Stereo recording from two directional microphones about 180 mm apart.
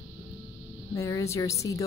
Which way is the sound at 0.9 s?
15° left (ahead or behind).